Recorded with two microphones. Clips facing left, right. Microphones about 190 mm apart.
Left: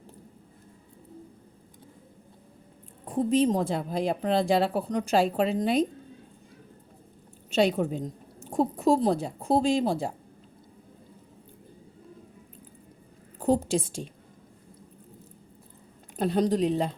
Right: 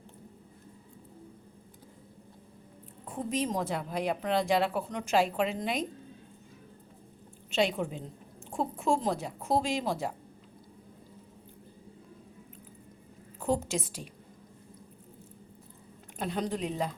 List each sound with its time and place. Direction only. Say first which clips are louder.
3.1 s a woman's voice: left 9 dB; 35° left (ahead or behind)
7.5 s a woman's voice: left 5 dB; 40° left (ahead or behind)
13.4 s a woman's voice: left 6 dB; 35° left (ahead or behind)
16.1 s a woman's voice: left 8 dB; 35° left (ahead or behind)